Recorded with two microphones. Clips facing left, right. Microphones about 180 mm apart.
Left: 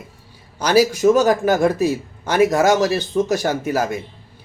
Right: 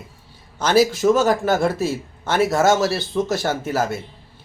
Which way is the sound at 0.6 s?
10° left (ahead or behind).